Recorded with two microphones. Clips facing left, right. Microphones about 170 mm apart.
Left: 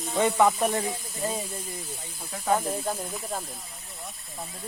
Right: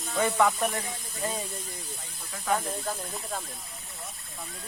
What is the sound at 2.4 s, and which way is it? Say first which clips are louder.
Speech: left 3 dB; 25° left (ahead or behind).